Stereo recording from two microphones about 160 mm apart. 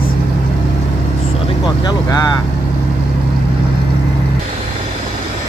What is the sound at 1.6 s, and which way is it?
Speech, 25° left (ahead or behind).